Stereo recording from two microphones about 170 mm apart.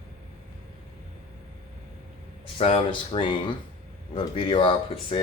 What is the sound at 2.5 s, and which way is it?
Speech, 35° left (ahead or behind).